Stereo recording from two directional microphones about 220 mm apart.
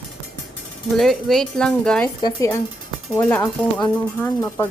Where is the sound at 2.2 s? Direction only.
15° left (ahead or behind).